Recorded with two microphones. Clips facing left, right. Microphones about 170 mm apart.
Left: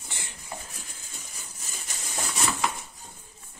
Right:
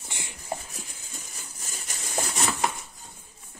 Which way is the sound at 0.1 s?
15° right (ahead or behind).